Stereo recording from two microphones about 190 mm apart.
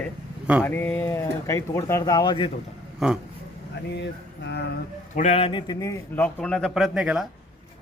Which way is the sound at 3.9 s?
65° left (ahead or behind).